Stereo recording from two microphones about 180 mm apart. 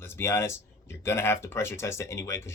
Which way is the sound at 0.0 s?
15° left (ahead or behind).